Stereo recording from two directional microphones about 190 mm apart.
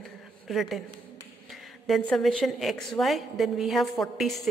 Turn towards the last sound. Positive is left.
turn(degrees=0)  # may be behind; listen again after turning